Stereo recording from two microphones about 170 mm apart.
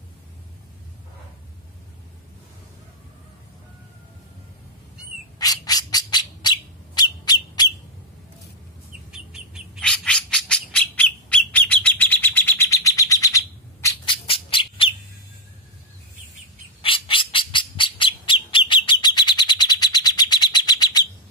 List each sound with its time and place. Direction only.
5.4 s bird: 20° left (ahead or behind)
9.1 s bird: 5° right (ahead or behind); by 14.1 s 20° left (ahead or behind)
14.2 s squawk: 30° left (ahead or behind)
16.8 s squawk: 30° left (ahead or behind)